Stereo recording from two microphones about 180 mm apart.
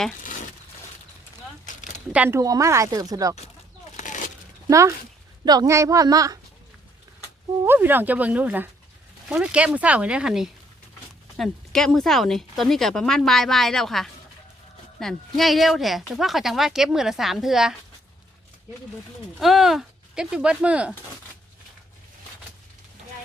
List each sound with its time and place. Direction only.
0.2 s crumpling: 45° left (ahead or behind)
2.1 s speech: 10° right (ahead or behind)
3.9 s a sound: 45° left (ahead or behind)
4.7 s speech: 15° right (ahead or behind)
7.6 s speech: 10° right (ahead or behind)
19.4 s speech: centre (ahead or behind)